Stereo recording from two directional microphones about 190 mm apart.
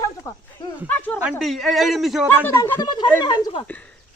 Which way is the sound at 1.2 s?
Centre (ahead or behind).